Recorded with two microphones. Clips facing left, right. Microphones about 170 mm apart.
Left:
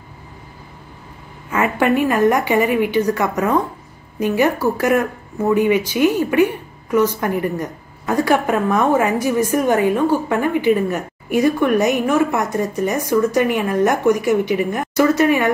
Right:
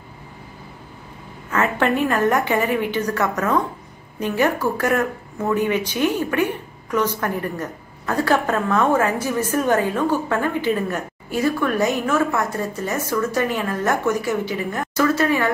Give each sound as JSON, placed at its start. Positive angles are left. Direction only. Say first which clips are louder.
{"t": 1.5, "sound": "a woman's voice", "louder": "left 3 dB", "side_deg": 10}